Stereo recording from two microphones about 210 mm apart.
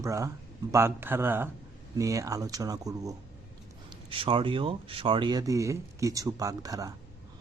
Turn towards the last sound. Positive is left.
turn(degrees=-15)  # may be behind; listen again after turning